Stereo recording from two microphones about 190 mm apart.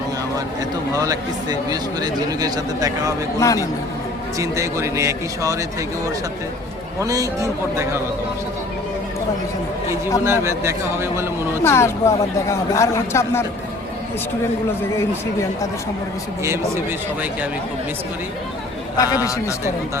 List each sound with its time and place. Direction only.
0.9 s a man's voice: 20° right (ahead or behind)
3.4 s speech: 15° left (ahead or behind)
4.4 s a man's voice: 15° right (ahead or behind)
7.0 s a man's voice: 20° right (ahead or behind)
10.2 s a man's voice: 15° right (ahead or behind)
11.6 s speech: 15° left (ahead or behind)
18.9 s speech: 20° left (ahead or behind)